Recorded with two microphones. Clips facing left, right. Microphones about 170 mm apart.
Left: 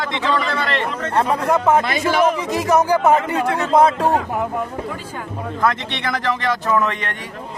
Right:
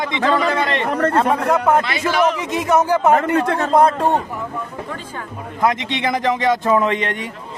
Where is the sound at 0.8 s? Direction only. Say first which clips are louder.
Right 7 dB; 60° right (ahead or behind).